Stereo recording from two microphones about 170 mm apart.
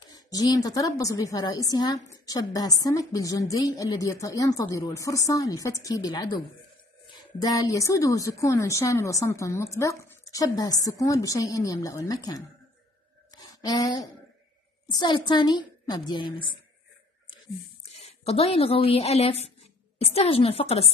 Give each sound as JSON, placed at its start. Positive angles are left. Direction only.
{"t": 0.0, "sound": "a woman's voice", "side_deg": 25}
{"t": 13.3, "sound": "a sound", "side_deg": 20}
{"t": 14.9, "sound": "a woman's voice", "side_deg": 25}
{"t": 17.8, "sound": "a woman's voice", "side_deg": 40}